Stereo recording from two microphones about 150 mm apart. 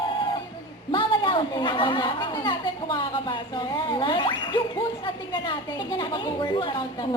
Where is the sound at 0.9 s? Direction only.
35° left (ahead or behind).